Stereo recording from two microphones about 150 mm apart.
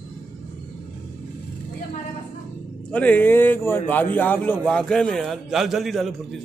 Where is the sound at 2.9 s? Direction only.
10° left (ahead or behind).